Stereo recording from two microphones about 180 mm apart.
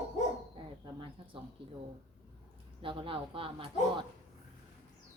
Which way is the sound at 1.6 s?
30° right (ahead or behind).